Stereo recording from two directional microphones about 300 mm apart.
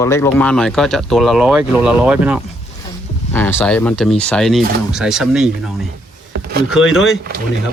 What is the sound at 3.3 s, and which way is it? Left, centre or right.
Speech, centre.